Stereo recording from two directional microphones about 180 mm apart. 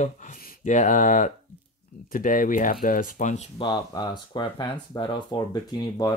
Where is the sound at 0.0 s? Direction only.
45° left (ahead or behind).